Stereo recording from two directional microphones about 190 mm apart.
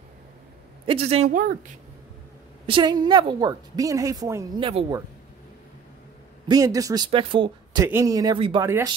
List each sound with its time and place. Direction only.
0.8 s speech: 30° right (ahead or behind)
2.6 s speech: 25° right (ahead or behind)
4.6 s speech: 30° right (ahead or behind)
6.4 s speech: 20° right (ahead or behind)
8.6 s speech: 15° right (ahead or behind)